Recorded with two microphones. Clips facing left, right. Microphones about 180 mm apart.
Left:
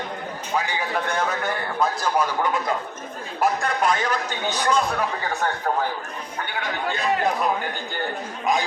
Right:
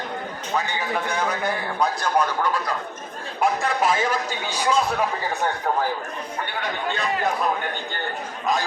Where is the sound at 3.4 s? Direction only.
5° right (ahead or behind).